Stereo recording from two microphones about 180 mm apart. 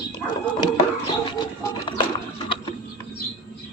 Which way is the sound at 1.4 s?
25° left (ahead or behind).